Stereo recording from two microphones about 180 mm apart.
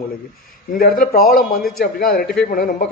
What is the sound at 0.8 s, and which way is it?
Speech, 55° left (ahead or behind).